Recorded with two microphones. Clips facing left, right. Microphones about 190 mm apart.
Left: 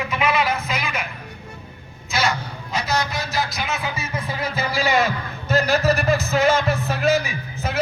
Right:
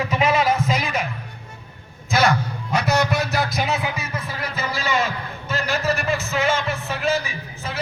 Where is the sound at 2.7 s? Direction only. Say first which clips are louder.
Right 4 dB; 65° right (ahead or behind).